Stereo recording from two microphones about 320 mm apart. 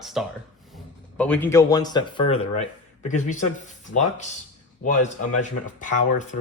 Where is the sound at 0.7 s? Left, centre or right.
Centre.